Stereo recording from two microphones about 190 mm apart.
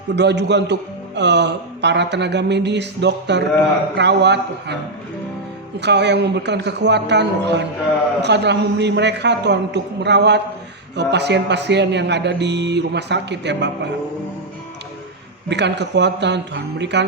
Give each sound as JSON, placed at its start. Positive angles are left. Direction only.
{"t": 0.2, "sound": "a man's voice", "side_deg": -65}
{"t": 5.8, "sound": "a man's voice", "side_deg": -65}
{"t": 15.4, "sound": "a man's voice", "side_deg": -65}